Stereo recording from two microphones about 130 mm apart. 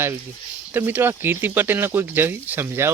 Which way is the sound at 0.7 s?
15° right (ahead or behind).